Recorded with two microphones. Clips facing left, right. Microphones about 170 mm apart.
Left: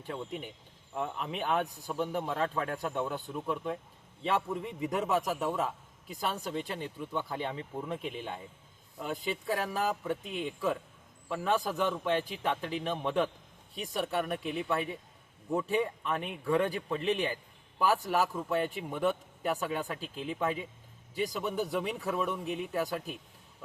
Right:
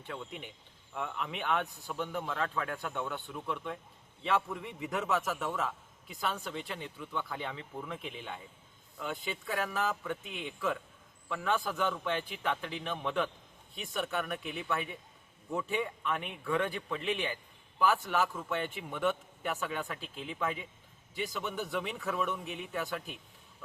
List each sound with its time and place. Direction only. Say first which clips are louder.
0.1 s a man's voice: left 4 dB; 35° left (ahead or behind)